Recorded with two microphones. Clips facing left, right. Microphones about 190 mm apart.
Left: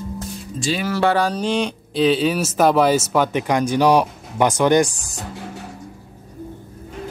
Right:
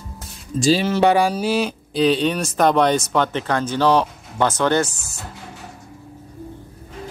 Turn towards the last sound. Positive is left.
turn(degrees=15)  # may be behind; listen again after turning